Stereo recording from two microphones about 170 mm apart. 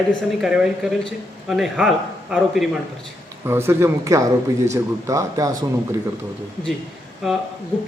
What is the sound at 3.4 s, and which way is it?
Speech, 15° right (ahead or behind).